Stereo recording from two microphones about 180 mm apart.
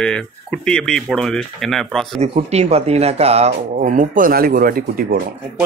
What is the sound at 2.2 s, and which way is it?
A man's voice, 35° right (ahead or behind).